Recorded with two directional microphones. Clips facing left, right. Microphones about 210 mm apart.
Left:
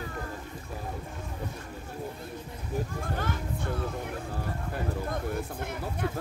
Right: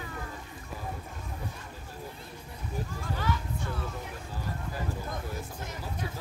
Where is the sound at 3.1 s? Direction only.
55° left (ahead or behind).